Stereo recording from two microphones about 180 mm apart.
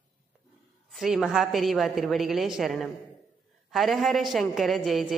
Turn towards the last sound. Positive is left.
turn(degrees=0)  # may be behind; listen again after turning